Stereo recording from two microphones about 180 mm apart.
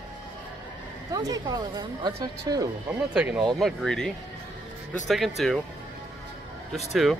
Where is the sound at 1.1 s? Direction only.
20° right (ahead or behind).